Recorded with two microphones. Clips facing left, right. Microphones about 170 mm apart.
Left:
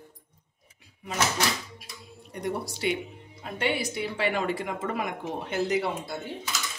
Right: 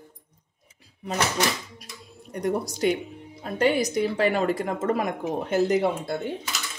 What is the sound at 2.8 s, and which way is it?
A woman's voice, 45° right (ahead or behind).